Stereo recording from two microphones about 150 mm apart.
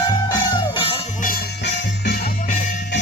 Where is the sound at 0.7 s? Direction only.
40° left (ahead or behind).